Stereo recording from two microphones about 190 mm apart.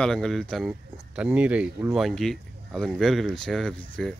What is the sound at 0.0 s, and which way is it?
Speech, 5° left (ahead or behind).